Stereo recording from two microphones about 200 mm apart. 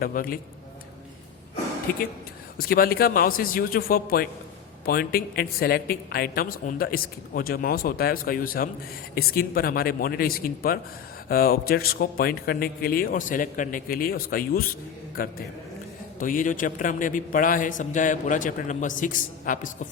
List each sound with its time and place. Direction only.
0.0 s a woman's voice: 45° left (ahead or behind)
1.9 s a woman's voice: 45° left (ahead or behind)